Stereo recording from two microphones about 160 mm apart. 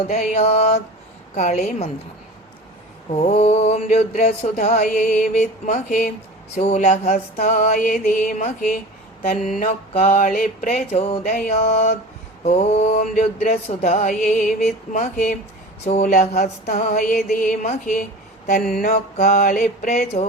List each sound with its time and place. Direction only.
0.1 s mantra: 45° left (ahead or behind)
3.1 s mantra: 45° left (ahead or behind)
9.6 s mantra: 40° left (ahead or behind)
10.2 s mantra: 60° left (ahead or behind); by 14.1 s 40° left (ahead or behind)
14.1 s music: 55° left (ahead or behind)
15.9 s mantra: 45° left (ahead or behind)
18.7 s music: 60° left (ahead or behind)
19.1 s mantra: 55° left (ahead or behind)